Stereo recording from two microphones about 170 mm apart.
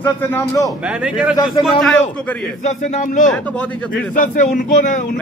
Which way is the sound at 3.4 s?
5° left (ahead or behind).